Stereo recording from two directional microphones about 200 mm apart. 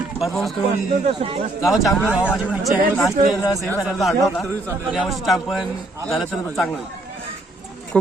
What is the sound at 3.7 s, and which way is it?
A man's voice, 5° right (ahead or behind).